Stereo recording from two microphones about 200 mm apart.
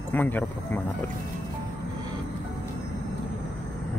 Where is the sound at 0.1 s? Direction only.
10° left (ahead or behind).